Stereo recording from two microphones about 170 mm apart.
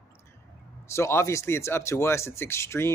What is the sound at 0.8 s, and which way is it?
Speech, 15° left (ahead or behind).